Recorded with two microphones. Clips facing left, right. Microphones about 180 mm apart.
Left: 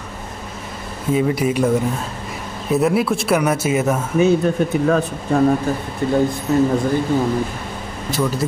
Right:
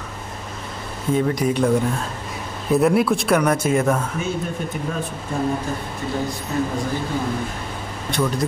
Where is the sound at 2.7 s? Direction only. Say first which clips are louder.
Even; centre (ahead or behind).